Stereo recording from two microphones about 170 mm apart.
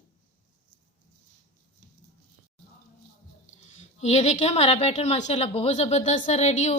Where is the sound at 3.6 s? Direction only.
40° left (ahead or behind).